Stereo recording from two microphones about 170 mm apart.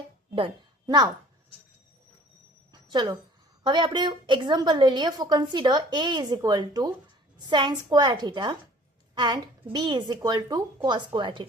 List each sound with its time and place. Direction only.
0.3 s a woman's voice: 30° right (ahead or behind)
2.9 s a woman's voice: 25° right (ahead or behind)